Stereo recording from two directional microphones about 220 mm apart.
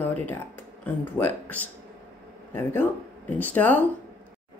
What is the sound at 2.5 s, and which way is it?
Speech, 10° left (ahead or behind).